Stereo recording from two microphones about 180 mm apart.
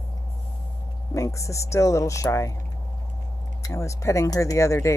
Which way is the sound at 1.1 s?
15° left (ahead or behind).